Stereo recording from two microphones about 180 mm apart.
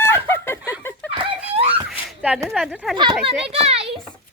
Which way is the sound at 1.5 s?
30° right (ahead or behind).